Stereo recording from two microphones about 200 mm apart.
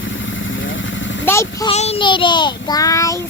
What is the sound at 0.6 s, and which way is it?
Vehicle, 70° left (ahead or behind).